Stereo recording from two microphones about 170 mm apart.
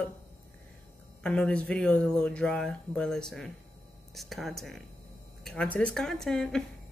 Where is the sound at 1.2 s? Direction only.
5° left (ahead or behind).